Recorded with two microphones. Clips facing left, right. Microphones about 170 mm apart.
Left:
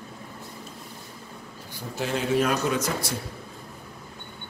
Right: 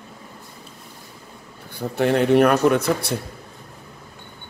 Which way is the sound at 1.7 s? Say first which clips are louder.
Right 10 dB; 65° right (ahead or behind).